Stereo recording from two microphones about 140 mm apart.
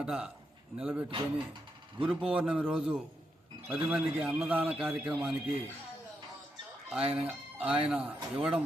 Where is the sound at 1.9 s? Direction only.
40° right (ahead or behind).